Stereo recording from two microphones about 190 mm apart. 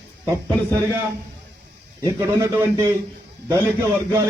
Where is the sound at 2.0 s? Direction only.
15° right (ahead or behind).